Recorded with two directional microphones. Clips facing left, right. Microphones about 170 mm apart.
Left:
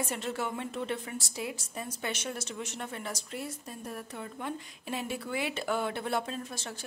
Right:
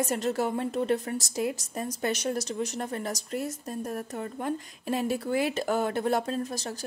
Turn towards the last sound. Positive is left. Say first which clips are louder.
# right 7 dB
turn(degrees=-40)  # may be behind; listen again after turning